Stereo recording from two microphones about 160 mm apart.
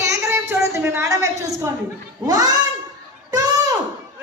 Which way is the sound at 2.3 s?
25° right (ahead or behind).